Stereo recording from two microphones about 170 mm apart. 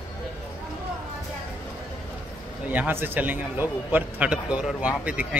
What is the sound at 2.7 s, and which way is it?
A man's voice, 10° right (ahead or behind).